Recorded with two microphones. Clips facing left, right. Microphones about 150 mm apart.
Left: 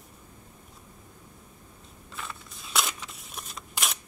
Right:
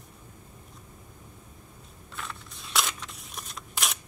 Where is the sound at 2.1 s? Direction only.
Centre (ahead or behind).